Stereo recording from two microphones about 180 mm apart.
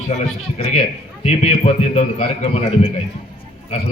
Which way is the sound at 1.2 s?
35° left (ahead or behind).